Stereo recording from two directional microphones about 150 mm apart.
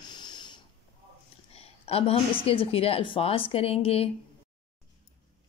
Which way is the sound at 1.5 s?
40° left (ahead or behind).